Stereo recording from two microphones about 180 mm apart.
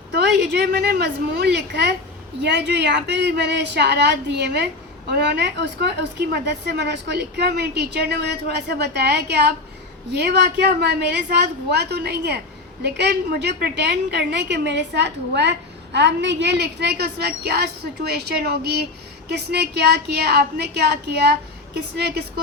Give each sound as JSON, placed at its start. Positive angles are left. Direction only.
{"t": 0.1, "sound": "a woman's voice", "side_deg": -65}